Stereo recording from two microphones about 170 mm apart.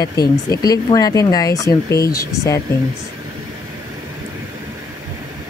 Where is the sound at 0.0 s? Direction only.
20° left (ahead or behind).